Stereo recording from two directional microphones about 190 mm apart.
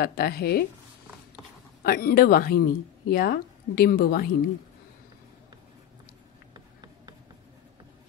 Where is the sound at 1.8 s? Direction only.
50° left (ahead or behind).